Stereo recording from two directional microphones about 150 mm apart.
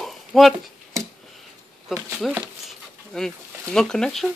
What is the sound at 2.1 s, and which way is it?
Speech, centre (ahead or behind).